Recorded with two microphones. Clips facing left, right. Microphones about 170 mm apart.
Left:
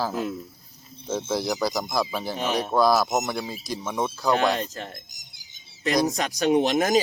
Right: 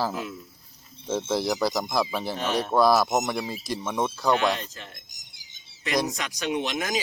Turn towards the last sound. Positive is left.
turn(degrees=40)  # may be behind; listen again after turning